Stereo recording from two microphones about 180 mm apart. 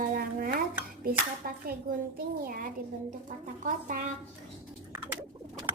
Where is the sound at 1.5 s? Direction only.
55° right (ahead or behind).